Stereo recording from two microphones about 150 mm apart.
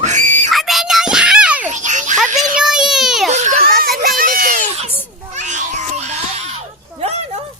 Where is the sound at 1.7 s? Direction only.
55° right (ahead or behind).